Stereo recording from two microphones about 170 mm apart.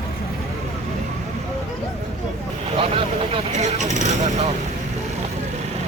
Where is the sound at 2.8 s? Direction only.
35° right (ahead or behind).